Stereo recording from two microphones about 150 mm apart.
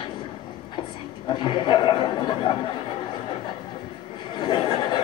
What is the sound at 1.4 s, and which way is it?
A man's voice, 35° left (ahead or behind).